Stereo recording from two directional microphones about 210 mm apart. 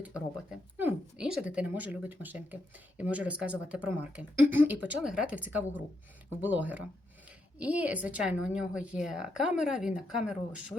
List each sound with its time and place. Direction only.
0.5 s speech: 5° right (ahead or behind)